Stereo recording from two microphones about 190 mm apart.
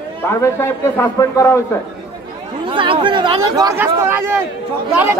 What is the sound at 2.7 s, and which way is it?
Speech, 25° right (ahead or behind).